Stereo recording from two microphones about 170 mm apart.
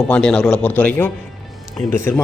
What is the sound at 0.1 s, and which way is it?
A man's voice, 5° left (ahead or behind).